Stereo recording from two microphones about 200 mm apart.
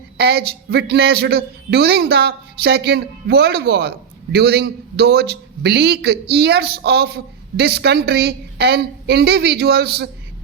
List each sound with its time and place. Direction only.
0.2 s a man's voice: 55° right (ahead or behind)